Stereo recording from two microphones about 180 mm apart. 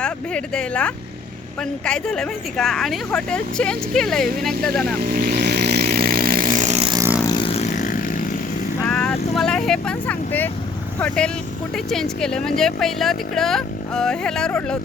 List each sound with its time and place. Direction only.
0.0 s speech: 5° left (ahead or behind)
4.9 s speech: 50° right (ahead or behind)
5.5 s chainsaw: 65° right (ahead or behind); by 6.9 s 40° right (ahead or behind)
7.2 s vehicle: 20° left (ahead or behind); by 8.2 s 50° left (ahead or behind)
8.8 s speech: 5° left (ahead or behind)